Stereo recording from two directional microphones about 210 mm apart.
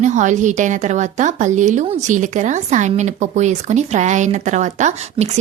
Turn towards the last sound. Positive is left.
turn(degrees=-35)  # may be behind; listen again after turning